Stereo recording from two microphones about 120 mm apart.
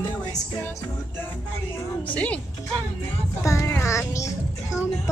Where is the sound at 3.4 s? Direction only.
25° left (ahead or behind).